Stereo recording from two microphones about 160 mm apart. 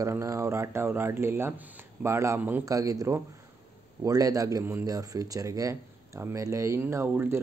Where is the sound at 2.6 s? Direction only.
20° right (ahead or behind).